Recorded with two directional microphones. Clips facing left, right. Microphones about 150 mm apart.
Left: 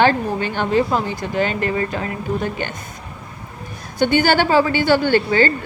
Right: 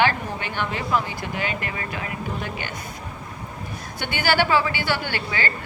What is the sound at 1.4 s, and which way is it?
Speech, 40° left (ahead or behind).